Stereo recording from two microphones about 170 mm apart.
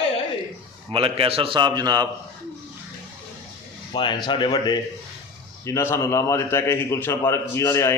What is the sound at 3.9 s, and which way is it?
A man's voice, 25° left (ahead or behind).